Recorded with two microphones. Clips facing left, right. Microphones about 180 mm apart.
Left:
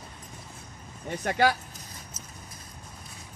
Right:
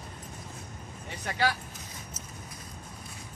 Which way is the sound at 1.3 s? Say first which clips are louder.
Left 5 dB; 50° left (ahead or behind).